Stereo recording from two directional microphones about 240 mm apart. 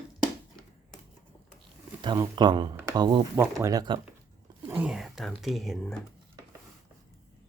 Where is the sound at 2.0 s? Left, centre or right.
Centre.